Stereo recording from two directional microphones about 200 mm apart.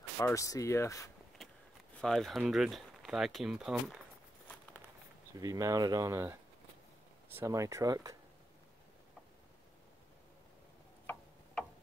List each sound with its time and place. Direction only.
0.2 s speech: 15° left (ahead or behind)
2.0 s speech: centre (ahead or behind)
5.4 s speech: 15° right (ahead or behind)
7.3 s speech: 15° right (ahead or behind)